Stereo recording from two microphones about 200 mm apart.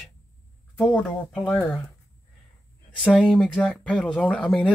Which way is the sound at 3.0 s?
Centre (ahead or behind).